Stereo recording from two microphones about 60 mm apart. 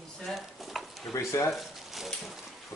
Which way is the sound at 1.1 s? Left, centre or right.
Left.